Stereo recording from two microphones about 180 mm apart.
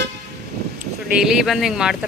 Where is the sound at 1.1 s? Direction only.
5° right (ahead or behind).